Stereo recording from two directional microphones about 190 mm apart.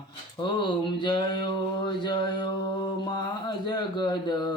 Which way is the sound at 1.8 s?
25° left (ahead or behind).